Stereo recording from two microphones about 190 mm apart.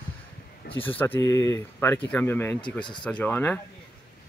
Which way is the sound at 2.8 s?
25° left (ahead or behind).